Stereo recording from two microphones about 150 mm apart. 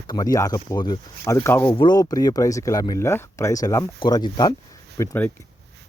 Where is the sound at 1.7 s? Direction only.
30° left (ahead or behind).